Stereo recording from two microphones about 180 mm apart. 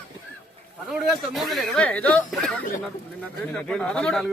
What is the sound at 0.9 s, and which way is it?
Speech, centre (ahead or behind).